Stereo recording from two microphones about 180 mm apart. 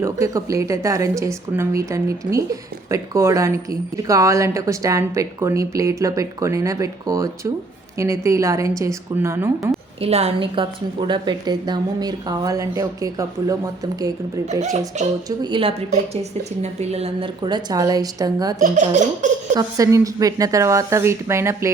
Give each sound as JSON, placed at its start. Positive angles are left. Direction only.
{"t": 0.0, "sound": "speech", "side_deg": -20}
{"t": 10.0, "sound": "a woman's voice", "side_deg": -35}
{"t": 14.6, "sound": "speech", "side_deg": -40}
{"t": 15.4, "sound": "a woman's voice", "side_deg": -25}
{"t": 16.9, "sound": "a woman's voice", "side_deg": -30}
{"t": 18.6, "sound": "speech", "side_deg": -45}
{"t": 19.5, "sound": "speech", "side_deg": -20}